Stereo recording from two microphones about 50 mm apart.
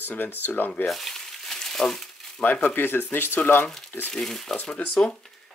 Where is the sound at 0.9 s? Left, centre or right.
Centre.